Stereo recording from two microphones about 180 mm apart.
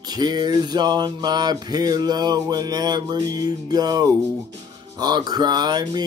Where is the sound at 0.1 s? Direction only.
25° right (ahead or behind).